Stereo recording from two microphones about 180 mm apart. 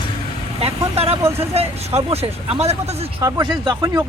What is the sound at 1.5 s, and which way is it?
Speech, 35° right (ahead or behind).